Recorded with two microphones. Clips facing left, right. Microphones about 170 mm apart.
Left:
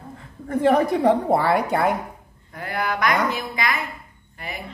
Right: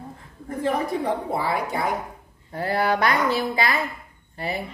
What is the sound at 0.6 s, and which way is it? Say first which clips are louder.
A woman's voice: left 7 dB; 70° left (ahead or behind).